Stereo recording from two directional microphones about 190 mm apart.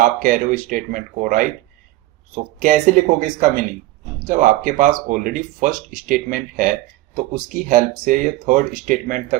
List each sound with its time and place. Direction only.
0.0 s speech: 45° right (ahead or behind)
2.6 s speech: 45° right (ahead or behind)